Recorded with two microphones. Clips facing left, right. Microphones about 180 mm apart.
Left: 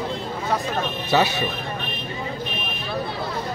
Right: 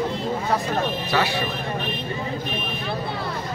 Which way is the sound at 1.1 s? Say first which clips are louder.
Left 5 dB; 25° left (ahead or behind).